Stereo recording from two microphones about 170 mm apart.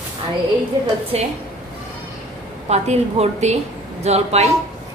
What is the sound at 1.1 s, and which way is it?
Speech, 40° right (ahead or behind).